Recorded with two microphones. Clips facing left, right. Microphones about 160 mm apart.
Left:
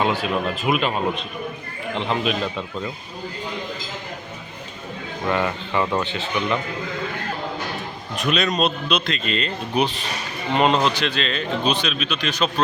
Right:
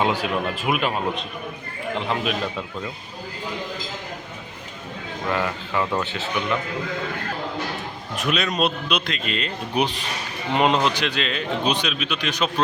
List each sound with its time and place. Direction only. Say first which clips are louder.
0.0 s speech: left 1 dB; 15° right (ahead or behind)
2.0 s speech: left 3 dB; 5° right (ahead or behind)
5.3 s speech: left 2 dB; centre (ahead or behind)
8.1 s speech: left 2 dB; 5° right (ahead or behind)